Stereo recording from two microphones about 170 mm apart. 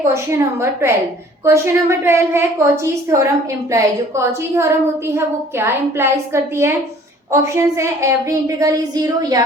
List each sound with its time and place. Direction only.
0.1 s a woman's voice: 15° right (ahead or behind)